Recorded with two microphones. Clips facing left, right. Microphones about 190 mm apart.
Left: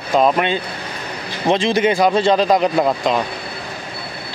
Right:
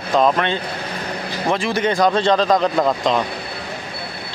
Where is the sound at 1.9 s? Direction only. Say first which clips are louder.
Even; 10° left (ahead or behind).